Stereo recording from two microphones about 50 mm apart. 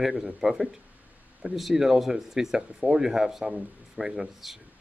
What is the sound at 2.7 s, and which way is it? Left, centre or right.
A man's voice, right.